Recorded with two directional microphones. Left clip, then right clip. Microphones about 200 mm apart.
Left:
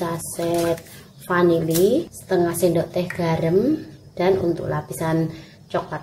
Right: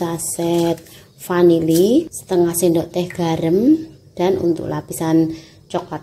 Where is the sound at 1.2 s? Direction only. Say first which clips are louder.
Right 4 dB; 35° right (ahead or behind).